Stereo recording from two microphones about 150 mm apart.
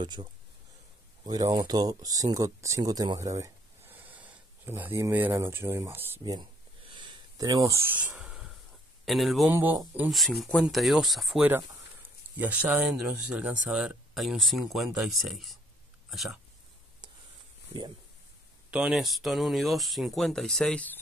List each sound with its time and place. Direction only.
0.0 s speech: 30° right (ahead or behind)
6.9 s a sound: 30° right (ahead or behind)
8.0 s a sound: 5° right (ahead or behind)
9.0 s speech: centre (ahead or behind)
9.5 s speech: 15° right (ahead or behind)
10.0 s speech: centre (ahead or behind)
18.7 s speech: 5° right (ahead or behind)